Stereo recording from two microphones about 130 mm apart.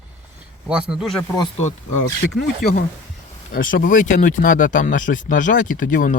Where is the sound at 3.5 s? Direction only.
90° left.